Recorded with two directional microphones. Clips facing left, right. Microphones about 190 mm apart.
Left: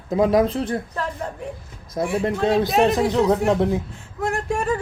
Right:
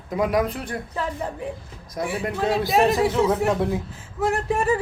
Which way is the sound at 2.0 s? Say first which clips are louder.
Left 3 dB; 25° left (ahead or behind).